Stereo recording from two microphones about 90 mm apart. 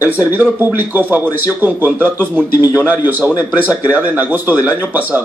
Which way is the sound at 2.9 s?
20° right (ahead or behind).